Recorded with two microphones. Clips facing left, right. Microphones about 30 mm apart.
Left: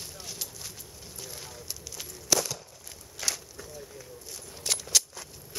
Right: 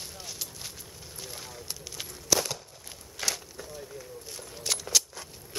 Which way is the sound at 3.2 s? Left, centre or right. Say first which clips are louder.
Right 1 dB; centre.